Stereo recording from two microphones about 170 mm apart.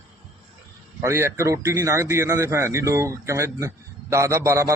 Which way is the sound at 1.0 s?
15° right (ahead or behind).